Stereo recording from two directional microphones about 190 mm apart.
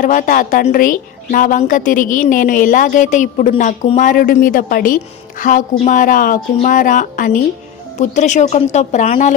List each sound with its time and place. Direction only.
0.0 s a woman's voice: 45° left (ahead or behind)